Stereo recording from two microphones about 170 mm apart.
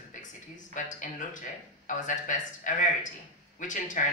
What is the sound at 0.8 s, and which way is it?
Speech, 50° left (ahead or behind).